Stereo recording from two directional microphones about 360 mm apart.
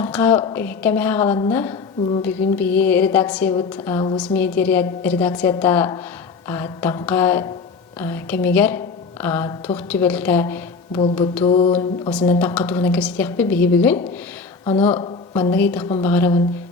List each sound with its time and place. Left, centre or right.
0.0 s a woman's voice: centre
11.4 s mantra: centre
12.1 s a woman's voice: centre
14.6 s speech: centre
14.9 s a sound: centre
15.4 s a woman's voice: centre